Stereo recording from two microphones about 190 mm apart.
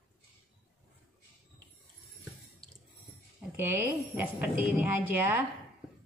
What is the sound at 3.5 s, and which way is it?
A woman's voice, 10° right (ahead or behind).